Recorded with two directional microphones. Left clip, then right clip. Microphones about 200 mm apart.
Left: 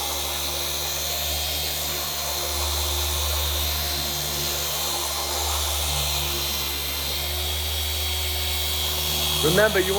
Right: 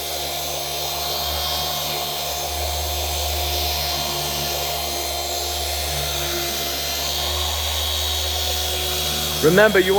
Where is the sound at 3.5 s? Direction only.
15° right (ahead or behind).